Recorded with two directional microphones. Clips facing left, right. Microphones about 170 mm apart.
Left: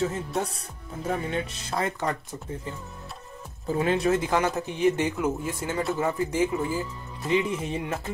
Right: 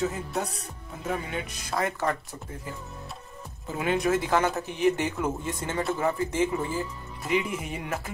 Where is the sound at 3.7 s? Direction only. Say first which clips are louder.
Left 3 dB; 30° left (ahead or behind).